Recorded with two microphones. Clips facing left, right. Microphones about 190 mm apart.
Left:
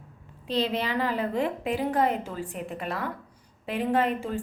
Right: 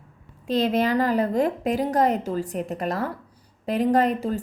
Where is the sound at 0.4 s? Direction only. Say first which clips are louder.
Right 6 dB; 45° right (ahead or behind).